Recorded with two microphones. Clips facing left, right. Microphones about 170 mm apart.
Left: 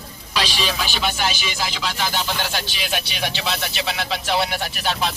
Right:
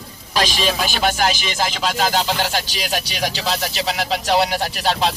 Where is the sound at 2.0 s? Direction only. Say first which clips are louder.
Right 6 dB; 90° right.